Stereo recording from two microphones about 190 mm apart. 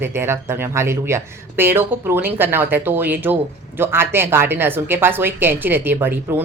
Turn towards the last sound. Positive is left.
turn(degrees=-10)  # may be behind; listen again after turning